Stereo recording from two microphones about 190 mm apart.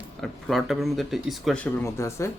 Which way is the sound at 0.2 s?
Centre (ahead or behind).